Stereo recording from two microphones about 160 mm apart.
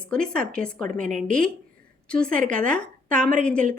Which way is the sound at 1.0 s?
55° right (ahead or behind).